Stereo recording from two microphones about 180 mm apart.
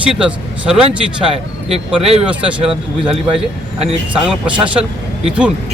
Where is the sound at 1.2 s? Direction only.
35° right (ahead or behind).